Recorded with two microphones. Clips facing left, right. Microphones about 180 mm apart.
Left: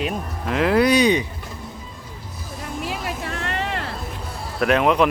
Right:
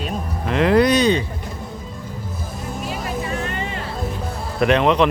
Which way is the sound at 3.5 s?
80° left.